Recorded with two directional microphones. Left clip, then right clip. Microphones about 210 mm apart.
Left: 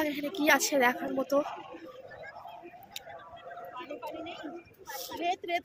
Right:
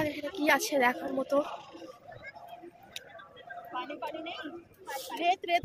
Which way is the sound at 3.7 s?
35° right (ahead or behind).